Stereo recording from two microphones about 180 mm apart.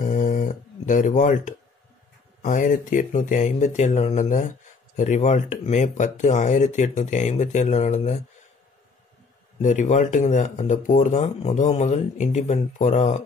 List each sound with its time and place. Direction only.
0.0 s a sound: 45° left (ahead or behind)
2.4 s speech: 45° left (ahead or behind)
9.6 s speech: 45° left (ahead or behind)